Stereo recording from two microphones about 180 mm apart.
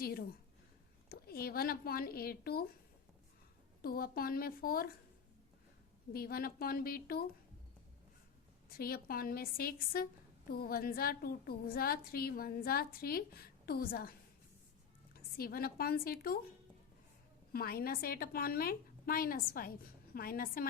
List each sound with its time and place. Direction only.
1.1 s a woman's voice: 60° left (ahead or behind)
3.8 s a woman's voice: 55° left (ahead or behind)
6.1 s a woman's voice: 55° left (ahead or behind)
8.8 s a woman's voice: 55° left (ahead or behind)
17.5 s a woman's voice: 55° left (ahead or behind)